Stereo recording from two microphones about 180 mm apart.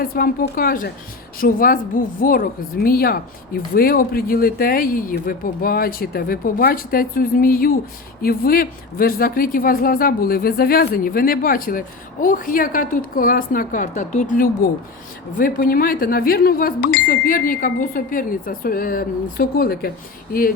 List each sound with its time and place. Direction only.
0.0 s speech: 55° left (ahead or behind)